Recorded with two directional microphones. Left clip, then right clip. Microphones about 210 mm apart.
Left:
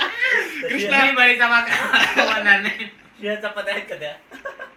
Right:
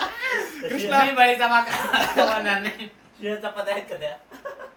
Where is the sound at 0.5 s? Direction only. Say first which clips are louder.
Left 2 dB; 25° right (ahead or behind).